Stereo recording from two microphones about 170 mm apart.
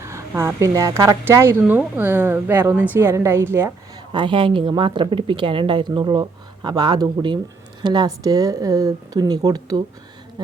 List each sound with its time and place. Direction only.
0.0 s speech: 15° right (ahead or behind)
4.1 s a woman's voice: 30° right (ahead or behind)